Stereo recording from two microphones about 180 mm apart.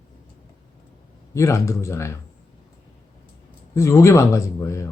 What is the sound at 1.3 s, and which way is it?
Speech, 15° left (ahead or behind).